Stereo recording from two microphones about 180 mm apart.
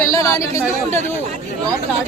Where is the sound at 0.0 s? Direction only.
20° left (ahead or behind).